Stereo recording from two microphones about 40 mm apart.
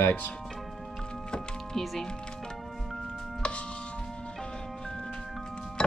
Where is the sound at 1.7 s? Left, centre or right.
Centre.